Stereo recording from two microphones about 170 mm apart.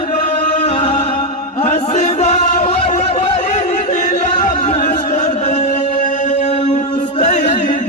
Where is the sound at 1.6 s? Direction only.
45° left (ahead or behind).